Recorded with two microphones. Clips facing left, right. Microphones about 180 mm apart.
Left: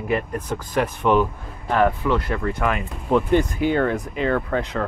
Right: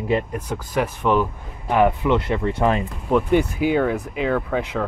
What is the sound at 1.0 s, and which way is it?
Speech, centre (ahead or behind).